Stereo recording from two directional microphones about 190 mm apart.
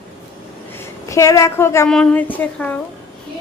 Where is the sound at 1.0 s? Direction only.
15° left (ahead or behind).